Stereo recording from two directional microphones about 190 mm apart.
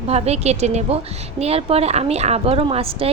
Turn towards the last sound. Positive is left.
turn(degrees=-30)  # may be behind; listen again after turning